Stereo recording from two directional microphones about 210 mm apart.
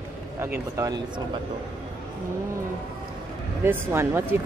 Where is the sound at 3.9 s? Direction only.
10° right (ahead or behind).